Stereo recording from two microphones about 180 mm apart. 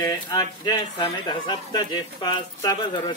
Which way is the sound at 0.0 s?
20° left (ahead or behind).